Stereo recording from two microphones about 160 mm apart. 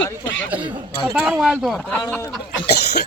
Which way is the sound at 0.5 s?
10° right (ahead or behind).